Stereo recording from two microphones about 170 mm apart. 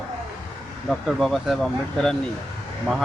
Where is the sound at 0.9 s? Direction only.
Centre (ahead or behind).